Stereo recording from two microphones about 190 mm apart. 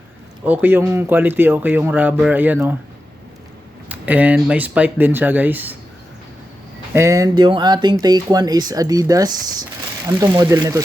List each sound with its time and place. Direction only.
0.4 s speech: 10° right (ahead or behind)
3.8 s speech: 10° right (ahead or behind)
6.9 s speech: 15° right (ahead or behind)